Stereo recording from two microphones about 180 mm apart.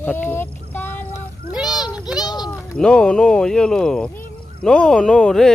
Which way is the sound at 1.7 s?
20° left (ahead or behind).